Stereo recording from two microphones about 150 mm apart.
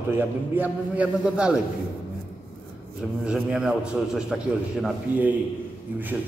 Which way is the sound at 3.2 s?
5° right (ahead or behind).